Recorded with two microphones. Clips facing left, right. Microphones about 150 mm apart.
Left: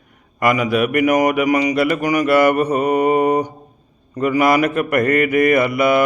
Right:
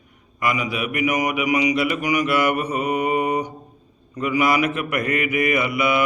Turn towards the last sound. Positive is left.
turn(degrees=45)  # may be behind; listen again after turning